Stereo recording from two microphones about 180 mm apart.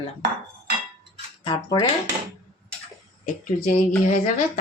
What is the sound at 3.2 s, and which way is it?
Speech, 50° left (ahead or behind).